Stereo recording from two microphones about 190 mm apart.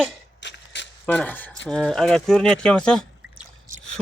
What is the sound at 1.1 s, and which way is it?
Speech, 10° left (ahead or behind).